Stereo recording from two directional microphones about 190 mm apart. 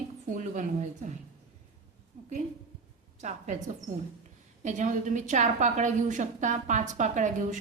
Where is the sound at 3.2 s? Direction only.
40° right (ahead or behind).